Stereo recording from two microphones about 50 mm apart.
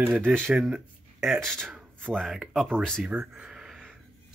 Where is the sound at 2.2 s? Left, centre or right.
Centre.